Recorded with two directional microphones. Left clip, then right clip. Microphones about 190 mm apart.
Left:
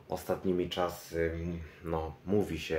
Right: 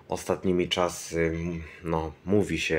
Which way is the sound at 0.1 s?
40° right (ahead or behind).